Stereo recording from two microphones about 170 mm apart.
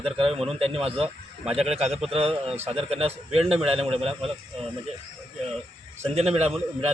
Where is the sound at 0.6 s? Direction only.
35° right (ahead or behind).